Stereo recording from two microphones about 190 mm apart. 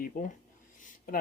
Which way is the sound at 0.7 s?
45° left (ahead or behind).